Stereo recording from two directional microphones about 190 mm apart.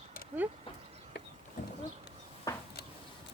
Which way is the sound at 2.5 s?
15° left (ahead or behind).